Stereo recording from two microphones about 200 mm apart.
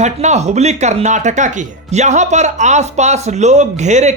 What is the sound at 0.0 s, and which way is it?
Speech, 35° right (ahead or behind).